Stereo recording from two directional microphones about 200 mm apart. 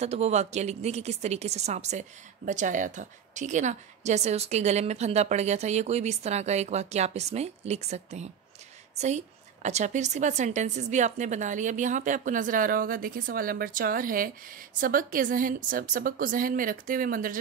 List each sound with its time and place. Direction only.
0.0 s a woman's voice: 35° right (ahead or behind)